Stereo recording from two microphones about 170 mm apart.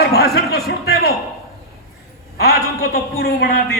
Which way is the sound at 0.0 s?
70° left (ahead or behind).